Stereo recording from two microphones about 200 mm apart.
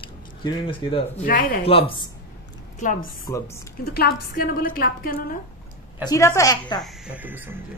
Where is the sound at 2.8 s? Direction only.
40° left (ahead or behind).